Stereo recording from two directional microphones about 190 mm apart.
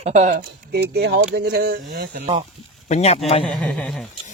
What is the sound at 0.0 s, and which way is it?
Speech, 35° right (ahead or behind).